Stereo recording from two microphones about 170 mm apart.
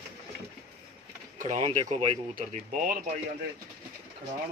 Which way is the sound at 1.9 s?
35° right (ahead or behind).